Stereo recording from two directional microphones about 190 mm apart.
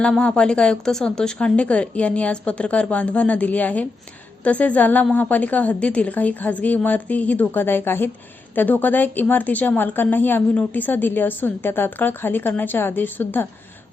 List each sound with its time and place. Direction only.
0.0 s speech: 5° left (ahead or behind)